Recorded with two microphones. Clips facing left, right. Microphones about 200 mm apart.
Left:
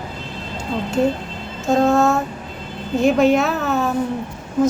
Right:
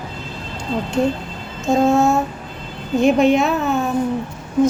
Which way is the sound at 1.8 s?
60° left (ahead or behind).